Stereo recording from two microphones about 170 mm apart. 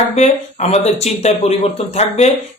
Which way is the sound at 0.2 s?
40° left (ahead or behind).